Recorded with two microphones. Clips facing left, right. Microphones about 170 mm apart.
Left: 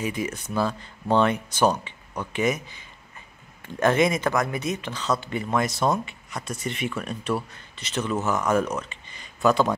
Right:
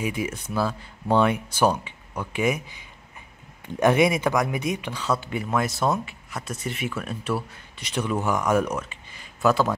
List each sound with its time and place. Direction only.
0.0 s speech: 10° right (ahead or behind)